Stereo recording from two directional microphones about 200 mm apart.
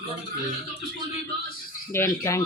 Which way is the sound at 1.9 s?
15° left (ahead or behind).